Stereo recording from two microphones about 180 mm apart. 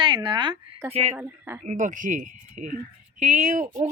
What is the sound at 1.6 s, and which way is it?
A woman's voice, 45° right (ahead or behind).